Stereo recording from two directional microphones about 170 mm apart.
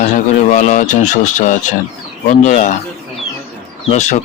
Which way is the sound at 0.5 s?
45° left (ahead or behind).